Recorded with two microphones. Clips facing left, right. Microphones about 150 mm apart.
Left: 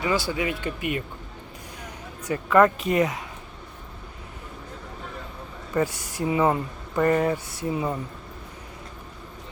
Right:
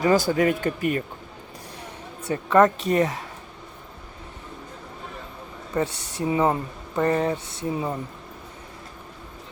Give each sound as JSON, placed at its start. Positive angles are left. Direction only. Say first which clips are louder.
{"t": 0.0, "sound": "speech", "louder": "right 6 dB", "side_deg": -45}
{"t": 1.8, "sound": "speech", "louder": "even", "side_deg": -30}
{"t": 5.7, "sound": "speech", "louder": "left 1 dB", "side_deg": -25}